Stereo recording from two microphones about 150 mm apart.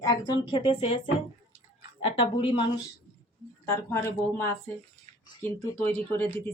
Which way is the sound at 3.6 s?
15° left (ahead or behind).